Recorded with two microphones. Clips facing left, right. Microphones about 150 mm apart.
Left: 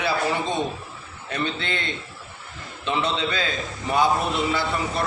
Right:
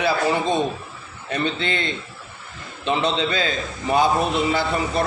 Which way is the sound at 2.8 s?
25° right (ahead or behind).